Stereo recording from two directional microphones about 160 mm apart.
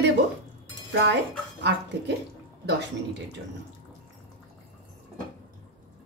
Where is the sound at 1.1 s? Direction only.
90° right.